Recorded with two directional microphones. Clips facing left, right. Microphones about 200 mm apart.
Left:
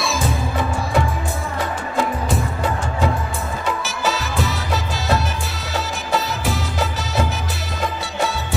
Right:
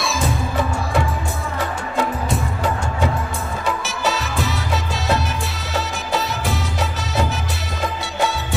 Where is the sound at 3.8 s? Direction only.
Centre (ahead or behind).